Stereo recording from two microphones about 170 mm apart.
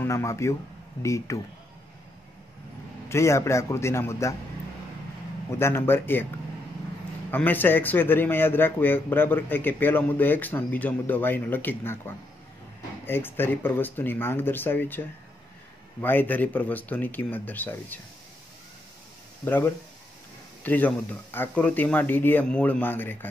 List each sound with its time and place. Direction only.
0.0 s speech: 15° left (ahead or behind)
3.1 s speech: 15° left (ahead or behind)
5.5 s speech: 15° left (ahead or behind)
7.2 s speech: 10° left (ahead or behind)
19.4 s speech: 10° left (ahead or behind)